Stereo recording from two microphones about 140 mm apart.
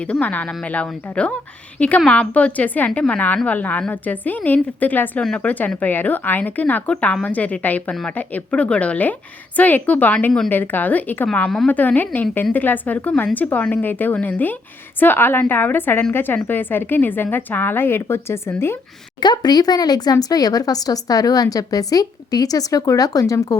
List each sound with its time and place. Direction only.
0.1 s a woman's voice: 10° left (ahead or behind)
19.2 s speech: 30° left (ahead or behind)